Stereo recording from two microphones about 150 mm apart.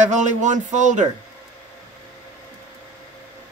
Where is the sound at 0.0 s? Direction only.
55° right (ahead or behind).